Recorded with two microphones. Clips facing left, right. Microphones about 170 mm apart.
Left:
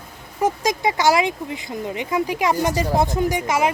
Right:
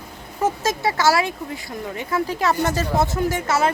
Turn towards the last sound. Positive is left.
turn(degrees=15)  # may be behind; listen again after turning